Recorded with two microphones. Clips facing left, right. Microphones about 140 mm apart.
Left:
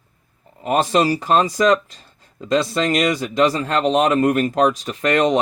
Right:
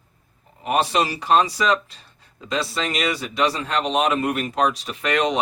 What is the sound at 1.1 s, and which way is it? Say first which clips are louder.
Speech: left 2 dB; 45° left (ahead or behind).